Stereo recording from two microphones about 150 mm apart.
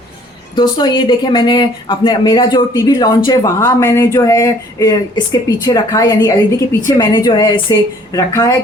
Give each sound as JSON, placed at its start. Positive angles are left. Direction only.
{"t": 0.5, "sound": "speech", "side_deg": 30}